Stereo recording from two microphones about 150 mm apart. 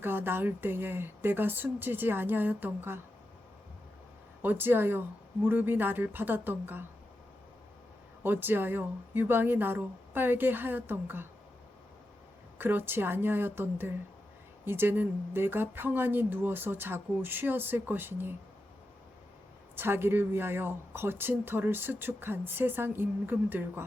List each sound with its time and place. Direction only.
0.0 s a woman's voice: 15° right (ahead or behind)
4.4 s a woman's voice: 15° right (ahead or behind)
8.2 s a woman's voice: 15° right (ahead or behind)
12.5 s a woman's voice: 15° right (ahead or behind)
19.7 s a woman's voice: 15° right (ahead or behind)